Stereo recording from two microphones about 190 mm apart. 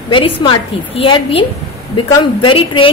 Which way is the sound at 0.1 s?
25° left (ahead or behind).